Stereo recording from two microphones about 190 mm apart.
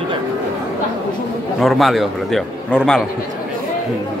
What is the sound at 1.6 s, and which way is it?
A man's voice, centre (ahead or behind).